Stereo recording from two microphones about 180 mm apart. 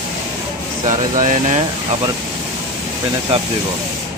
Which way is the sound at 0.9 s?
45° right (ahead or behind).